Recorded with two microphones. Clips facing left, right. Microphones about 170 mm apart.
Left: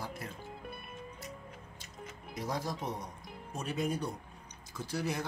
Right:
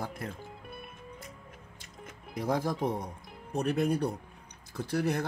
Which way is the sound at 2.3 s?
55° right (ahead or behind).